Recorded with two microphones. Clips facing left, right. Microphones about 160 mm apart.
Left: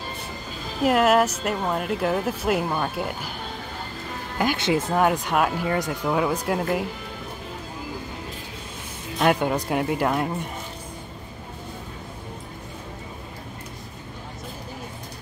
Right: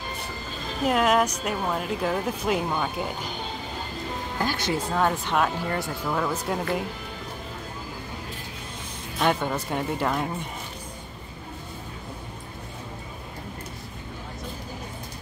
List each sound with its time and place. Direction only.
0.7 s speech: 5° left (ahead or behind)
4.4 s speech: 20° left (ahead or behind); by 6.9 s 5° left (ahead or behind)
9.2 s speech: 10° left (ahead or behind)